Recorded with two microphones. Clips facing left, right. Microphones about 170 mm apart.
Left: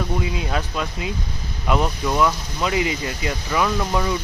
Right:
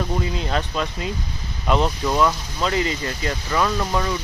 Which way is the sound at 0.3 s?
5° left (ahead or behind).